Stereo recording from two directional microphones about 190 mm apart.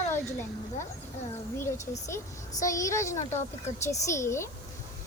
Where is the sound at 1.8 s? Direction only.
35° left (ahead or behind).